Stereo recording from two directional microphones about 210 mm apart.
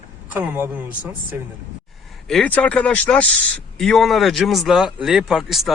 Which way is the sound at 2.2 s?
5° left (ahead or behind).